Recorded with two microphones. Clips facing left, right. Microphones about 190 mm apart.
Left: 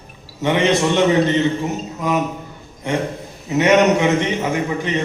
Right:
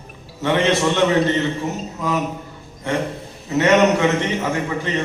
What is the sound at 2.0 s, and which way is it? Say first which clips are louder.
Mantra: left 2 dB; 20° left (ahead or behind).